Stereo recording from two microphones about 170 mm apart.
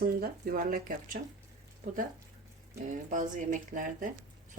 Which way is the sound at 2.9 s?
50° right (ahead or behind).